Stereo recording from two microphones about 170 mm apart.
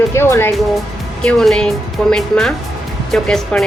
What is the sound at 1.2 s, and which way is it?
A woman's voice, 5° left (ahead or behind).